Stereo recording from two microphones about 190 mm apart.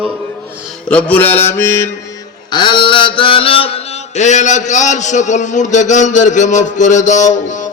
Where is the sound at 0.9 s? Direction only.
5° left (ahead or behind).